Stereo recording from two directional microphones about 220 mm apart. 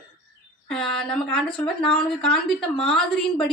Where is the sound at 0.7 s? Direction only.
5° left (ahead or behind).